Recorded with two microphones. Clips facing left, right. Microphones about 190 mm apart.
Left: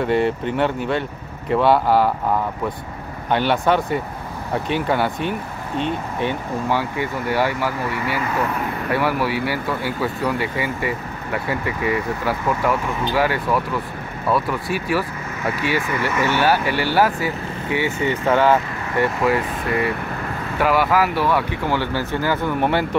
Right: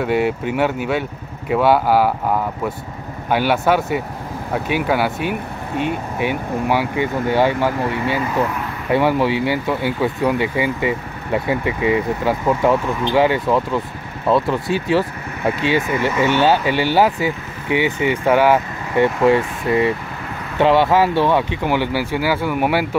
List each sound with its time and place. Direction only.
0.0 s speech: 5° right (ahead or behind)
19.2 s speech: 25° right (ahead or behind); by 22.8 s 10° right (ahead or behind)